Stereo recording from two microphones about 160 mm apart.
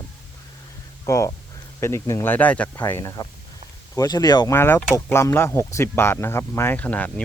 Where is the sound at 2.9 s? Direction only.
20° left (ahead or behind).